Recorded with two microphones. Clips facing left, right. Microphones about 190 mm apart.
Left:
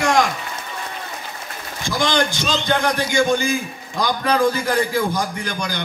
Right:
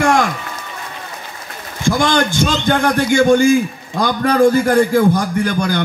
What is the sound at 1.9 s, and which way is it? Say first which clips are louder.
A man's voice: right 5 dB; 50° right (ahead or behind).